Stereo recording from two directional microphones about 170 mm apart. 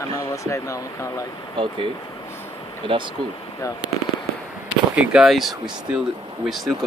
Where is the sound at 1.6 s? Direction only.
30° right (ahead or behind).